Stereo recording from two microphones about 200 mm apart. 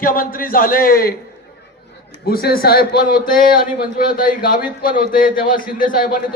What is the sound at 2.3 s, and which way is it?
A man's voice, 50° left (ahead or behind).